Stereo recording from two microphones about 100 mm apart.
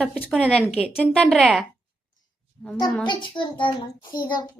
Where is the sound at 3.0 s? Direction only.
55° left (ahead or behind).